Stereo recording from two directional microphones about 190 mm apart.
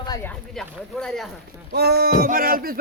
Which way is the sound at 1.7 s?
60° right (ahead or behind).